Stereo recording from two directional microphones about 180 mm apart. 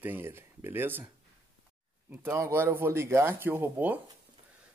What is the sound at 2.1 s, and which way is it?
Speech, 10° right (ahead or behind).